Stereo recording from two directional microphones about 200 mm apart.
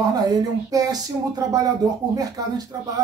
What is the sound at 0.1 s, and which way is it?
Speech, 20° right (ahead or behind).